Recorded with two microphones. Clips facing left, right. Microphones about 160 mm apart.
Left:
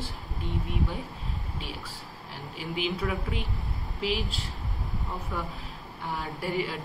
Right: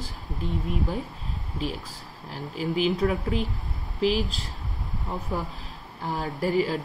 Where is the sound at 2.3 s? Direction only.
40° right (ahead or behind).